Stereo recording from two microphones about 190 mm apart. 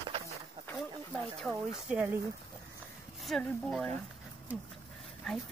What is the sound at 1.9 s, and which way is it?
Speech, 10° right (ahead or behind).